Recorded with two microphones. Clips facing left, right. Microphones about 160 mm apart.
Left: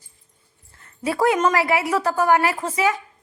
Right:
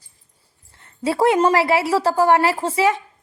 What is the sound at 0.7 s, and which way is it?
A woman's voice, 25° right (ahead or behind).